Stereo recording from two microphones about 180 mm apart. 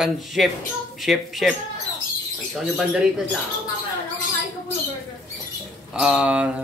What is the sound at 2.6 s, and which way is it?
Speech, centre (ahead or behind).